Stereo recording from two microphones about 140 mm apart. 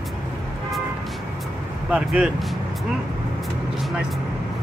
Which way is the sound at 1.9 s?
10° right (ahead or behind).